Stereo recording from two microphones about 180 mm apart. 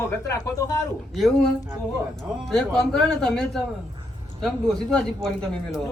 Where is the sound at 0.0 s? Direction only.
15° left (ahead or behind).